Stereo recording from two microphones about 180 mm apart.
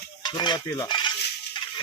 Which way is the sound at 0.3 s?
25° left (ahead or behind).